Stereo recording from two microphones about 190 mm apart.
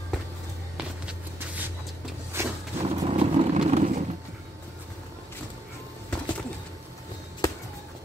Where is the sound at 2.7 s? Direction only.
30° right (ahead or behind).